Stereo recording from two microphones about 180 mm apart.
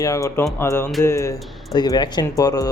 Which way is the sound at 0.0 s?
20° left (ahead or behind).